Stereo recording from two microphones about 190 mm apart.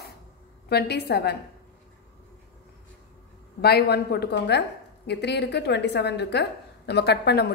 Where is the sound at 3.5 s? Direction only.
60° left (ahead or behind).